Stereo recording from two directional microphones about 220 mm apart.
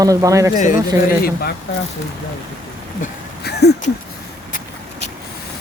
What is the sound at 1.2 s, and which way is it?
Speech, 45° left (ahead or behind).